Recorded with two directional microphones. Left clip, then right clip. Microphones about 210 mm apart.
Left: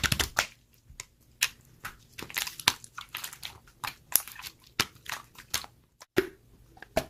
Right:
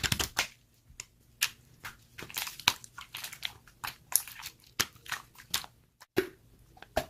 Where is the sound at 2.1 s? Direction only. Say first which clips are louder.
Left 5 dB; 15° left (ahead or behind).